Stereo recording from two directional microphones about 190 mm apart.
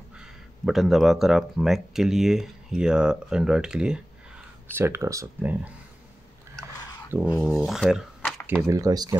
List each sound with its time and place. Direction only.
0.2 s speech: centre (ahead or behind)
7.1 s speech: 10° right (ahead or behind)
8.6 s speech: 15° right (ahead or behind)